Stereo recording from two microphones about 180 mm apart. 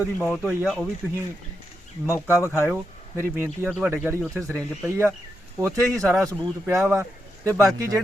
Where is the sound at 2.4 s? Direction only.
15° left (ahead or behind).